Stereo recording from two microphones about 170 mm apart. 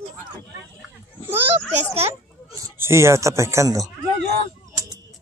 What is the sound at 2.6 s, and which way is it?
Speech, 15° right (ahead or behind).